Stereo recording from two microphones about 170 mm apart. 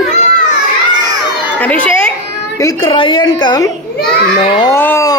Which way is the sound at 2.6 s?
30° left (ahead or behind).